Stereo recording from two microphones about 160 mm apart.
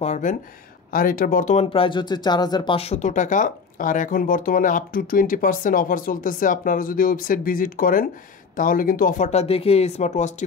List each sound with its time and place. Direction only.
0.0 s speech: 50° left (ahead or behind)
0.9 s speech: 60° left (ahead or behind)